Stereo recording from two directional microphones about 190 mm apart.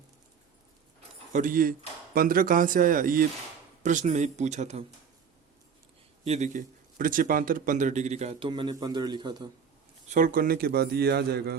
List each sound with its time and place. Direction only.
1.3 s a man's voice: 45° right (ahead or behind)
6.2 s a man's voice: 35° right (ahead or behind)
10.1 s a man's voice: 45° right (ahead or behind)